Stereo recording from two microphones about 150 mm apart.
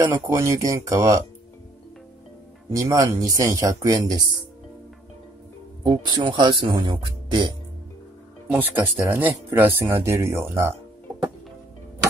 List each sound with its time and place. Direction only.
0.0 s speech: 20° right (ahead or behind)
2.7 s speech: 20° right (ahead or behind)
5.9 s speech: 30° right (ahead or behind)
8.5 s speech: 10° right (ahead or behind)